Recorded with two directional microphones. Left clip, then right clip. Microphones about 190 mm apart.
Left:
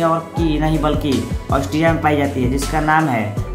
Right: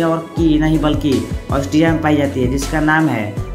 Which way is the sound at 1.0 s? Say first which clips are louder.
Right 3 dB; centre (ahead or behind).